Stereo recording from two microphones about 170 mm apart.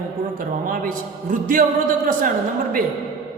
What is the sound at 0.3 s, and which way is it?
A man's voice, 55° right (ahead or behind).